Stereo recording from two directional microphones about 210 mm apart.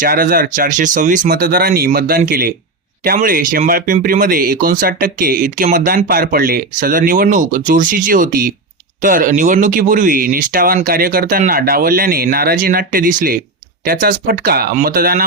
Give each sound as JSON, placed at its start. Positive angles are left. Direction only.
{"t": 0.0, "sound": "speech", "side_deg": -45}